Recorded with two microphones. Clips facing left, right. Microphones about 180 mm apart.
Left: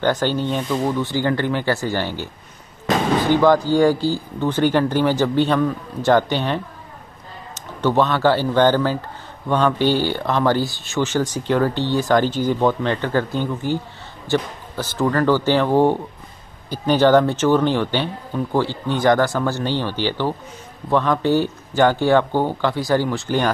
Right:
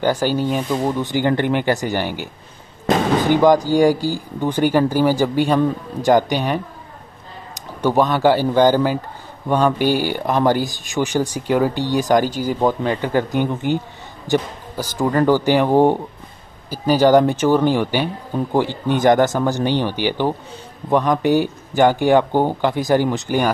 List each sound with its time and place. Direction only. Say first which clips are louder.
0.0 s speech: right 1 dB; 10° right (ahead or behind)
3.3 s speech: right 1 dB; 15° right (ahead or behind)